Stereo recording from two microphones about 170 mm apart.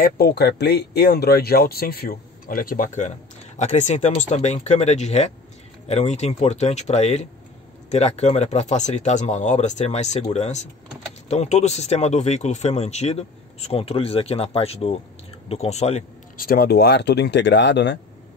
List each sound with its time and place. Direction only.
0.0 s speech: 70° left (ahead or behind); by 16.0 s 40° left (ahead or behind)
16.3 s speech: 60° left (ahead or behind); by 17.9 s 90° left